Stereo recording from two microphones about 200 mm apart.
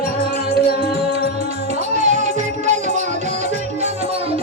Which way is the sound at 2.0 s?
35° right (ahead or behind).